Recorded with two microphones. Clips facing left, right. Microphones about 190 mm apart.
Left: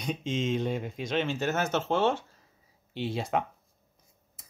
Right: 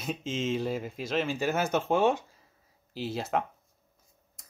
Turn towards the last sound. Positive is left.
turn(degrees=5)  # may be behind; listen again after turning